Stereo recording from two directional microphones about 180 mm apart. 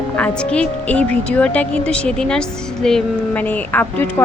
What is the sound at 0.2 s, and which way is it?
A woman's voice, 5° left (ahead or behind).